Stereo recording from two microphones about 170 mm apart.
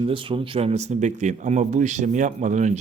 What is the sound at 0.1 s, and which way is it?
Speech, 30° right (ahead or behind).